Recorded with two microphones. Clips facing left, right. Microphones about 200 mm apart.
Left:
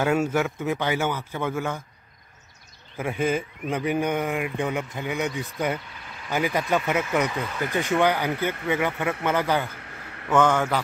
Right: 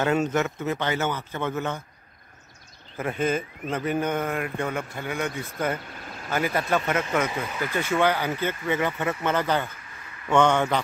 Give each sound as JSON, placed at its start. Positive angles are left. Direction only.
{"t": 0.0, "sound": "a man's voice", "side_deg": 10}
{"t": 3.0, "sound": "a man's voice", "side_deg": 10}
{"t": 5.9, "sound": "vehicle", "side_deg": -45}
{"t": 6.3, "sound": "a man's voice", "side_deg": 15}
{"t": 9.8, "sound": "a sound", "side_deg": 65}
{"t": 10.3, "sound": "a man's voice", "side_deg": 5}